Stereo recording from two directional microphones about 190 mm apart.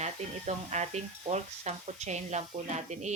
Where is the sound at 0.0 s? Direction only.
35° right (ahead or behind).